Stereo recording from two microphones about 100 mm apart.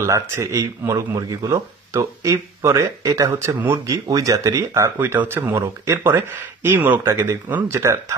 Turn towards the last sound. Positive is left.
turn(degrees=-30)  # may be behind; listen again after turning